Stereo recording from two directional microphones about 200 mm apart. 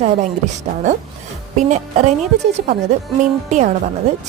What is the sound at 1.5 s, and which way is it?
Speech, 35° right (ahead or behind).